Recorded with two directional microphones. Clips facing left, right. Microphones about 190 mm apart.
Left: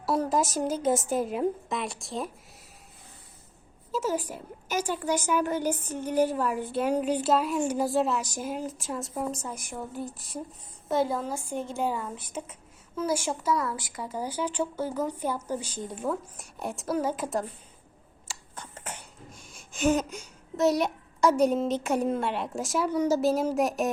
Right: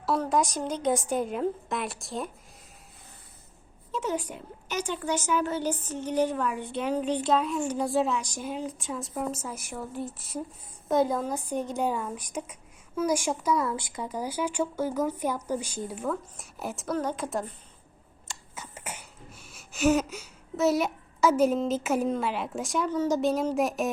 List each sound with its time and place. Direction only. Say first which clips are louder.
0.0 s a woman's voice: even; centre (ahead or behind)
4.0 s a woman's voice: left 1 dB; 40° left (ahead or behind)
4.7 s a woman's voice: left 2 dB; 10° left (ahead or behind)
10.9 s speech: right 2 dB; 15° right (ahead or behind)
16.4 s a woman's voice: left 1 dB; centre (ahead or behind)
18.5 s a sound: even; 10° right (ahead or behind)
22.9 s a woman's voice: left 1 dB; 10° left (ahead or behind)